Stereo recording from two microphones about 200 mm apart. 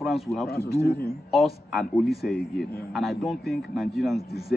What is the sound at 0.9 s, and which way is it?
Speech, 50° left (ahead or behind).